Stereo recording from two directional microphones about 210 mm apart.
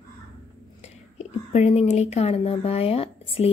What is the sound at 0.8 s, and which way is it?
Speech, 30° left (ahead or behind).